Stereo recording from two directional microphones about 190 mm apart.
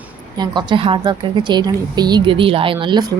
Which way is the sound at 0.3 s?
25° right (ahead or behind).